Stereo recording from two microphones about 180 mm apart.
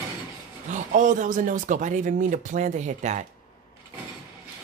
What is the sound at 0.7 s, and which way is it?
Speech, 45° right (ahead or behind).